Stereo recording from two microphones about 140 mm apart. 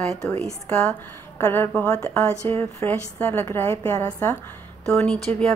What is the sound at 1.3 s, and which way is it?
A woman's voice, 15° left (ahead or behind).